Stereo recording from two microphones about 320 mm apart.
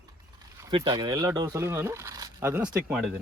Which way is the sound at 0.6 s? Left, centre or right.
Centre.